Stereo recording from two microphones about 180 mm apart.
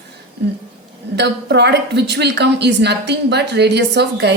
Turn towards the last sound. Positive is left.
turn(degrees=-70)  # may be behind; listen again after turning